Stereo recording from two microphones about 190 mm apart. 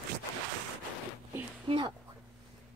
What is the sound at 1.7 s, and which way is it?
Speech, 25° right (ahead or behind).